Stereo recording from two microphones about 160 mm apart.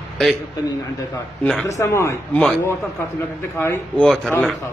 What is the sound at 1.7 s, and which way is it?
Speech, 20° left (ahead or behind).